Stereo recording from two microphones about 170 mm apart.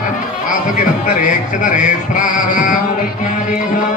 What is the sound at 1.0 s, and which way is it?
Music, 50° left (ahead or behind).